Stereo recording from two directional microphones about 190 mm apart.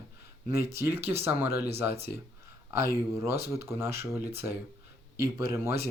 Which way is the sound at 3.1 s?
15° right (ahead or behind).